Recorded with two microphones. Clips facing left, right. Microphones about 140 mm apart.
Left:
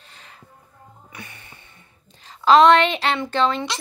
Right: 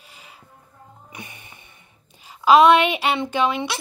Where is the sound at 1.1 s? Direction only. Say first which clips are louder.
Right 1 dB; 15° right (ahead or behind).